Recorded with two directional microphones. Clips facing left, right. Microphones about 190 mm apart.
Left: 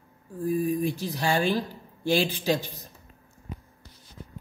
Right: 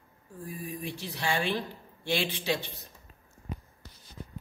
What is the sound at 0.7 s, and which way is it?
A man's voice, 40° left (ahead or behind).